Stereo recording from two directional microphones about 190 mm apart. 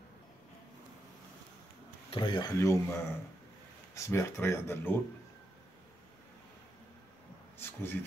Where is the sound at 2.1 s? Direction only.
25° left (ahead or behind).